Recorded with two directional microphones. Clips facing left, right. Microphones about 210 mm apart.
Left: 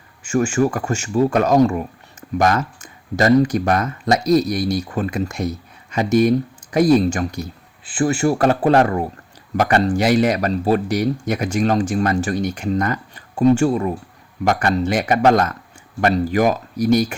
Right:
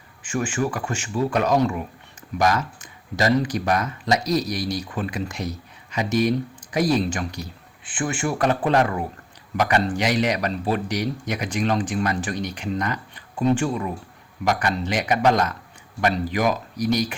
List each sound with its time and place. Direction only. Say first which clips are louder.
0.2 s speech: left 7 dB; 45° left (ahead or behind)